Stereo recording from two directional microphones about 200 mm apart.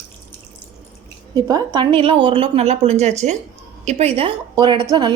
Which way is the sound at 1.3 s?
20° right (ahead or behind).